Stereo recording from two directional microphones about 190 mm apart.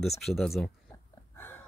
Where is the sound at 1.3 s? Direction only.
10° left (ahead or behind).